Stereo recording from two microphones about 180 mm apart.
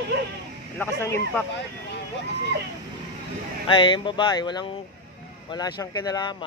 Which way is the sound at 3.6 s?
25° left (ahead or behind).